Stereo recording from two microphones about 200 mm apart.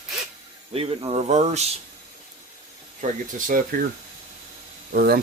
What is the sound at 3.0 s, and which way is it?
Speech, 40° right (ahead or behind).